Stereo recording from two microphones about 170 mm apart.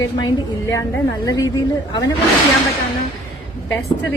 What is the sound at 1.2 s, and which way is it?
Speech, 20° left (ahead or behind).